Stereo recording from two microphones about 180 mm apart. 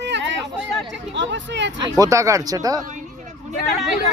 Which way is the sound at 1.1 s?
85° right.